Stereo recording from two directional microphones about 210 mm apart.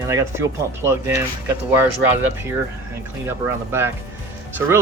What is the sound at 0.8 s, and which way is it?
Speech, 10° right (ahead or behind).